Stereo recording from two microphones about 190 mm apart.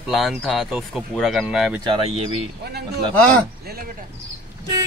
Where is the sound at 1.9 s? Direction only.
30° right (ahead or behind).